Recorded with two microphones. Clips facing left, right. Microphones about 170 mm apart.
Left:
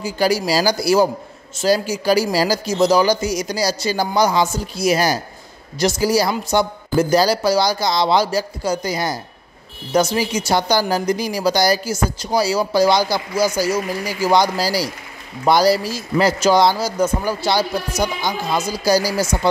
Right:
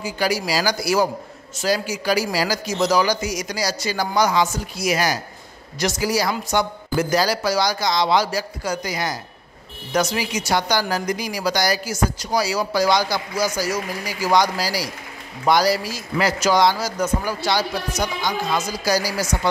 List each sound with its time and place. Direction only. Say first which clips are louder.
0.0 s speech: left 4 dB; 30° left (ahead or behind)